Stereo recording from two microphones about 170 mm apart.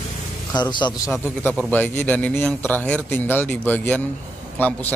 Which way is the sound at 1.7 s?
10° left (ahead or behind).